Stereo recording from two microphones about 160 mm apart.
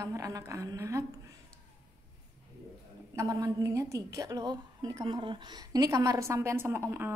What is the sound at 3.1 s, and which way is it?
A woman's voice, 20° right (ahead or behind).